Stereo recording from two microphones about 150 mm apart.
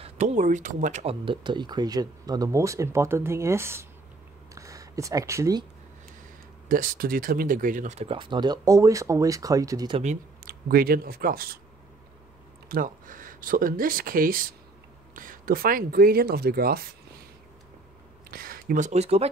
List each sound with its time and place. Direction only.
0.0 s speech: 50° right (ahead or behind)
1.0 s speech: 35° right (ahead or behind)
6.7 s speech: 65° right (ahead or behind); by 9.9 s 25° right (ahead or behind)
10.4 s speech: 85° right
12.6 s speech: 65° right (ahead or behind); by 16.9 s 90° right
18.3 s a sound: 80° right
18.9 s speech: 45° right (ahead or behind)